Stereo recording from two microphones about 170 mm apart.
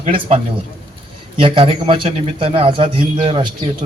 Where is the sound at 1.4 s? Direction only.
30° right (ahead or behind).